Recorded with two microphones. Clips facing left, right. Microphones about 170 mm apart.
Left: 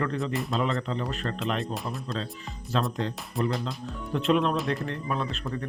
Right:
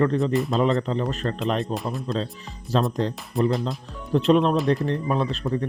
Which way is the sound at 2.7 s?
40° right (ahead or behind).